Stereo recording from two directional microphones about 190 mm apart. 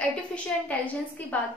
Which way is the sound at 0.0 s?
5° left (ahead or behind).